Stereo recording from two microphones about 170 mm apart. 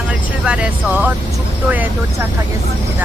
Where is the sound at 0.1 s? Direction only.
5° right (ahead or behind).